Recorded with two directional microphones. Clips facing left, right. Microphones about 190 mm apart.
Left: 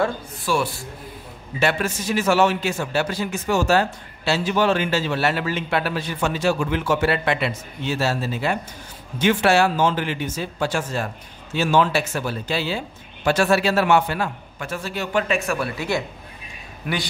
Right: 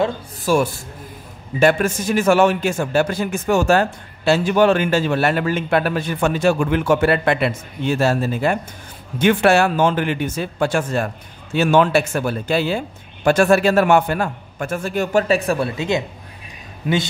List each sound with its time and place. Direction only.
0.5 s a man's voice: 45° right (ahead or behind); by 17.1 s 25° right (ahead or behind)